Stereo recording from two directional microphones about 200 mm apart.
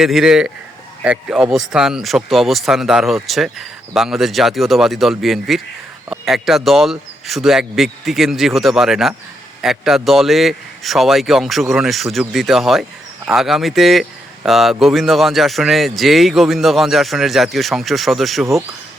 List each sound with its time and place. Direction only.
0.0 s speech: centre (ahead or behind)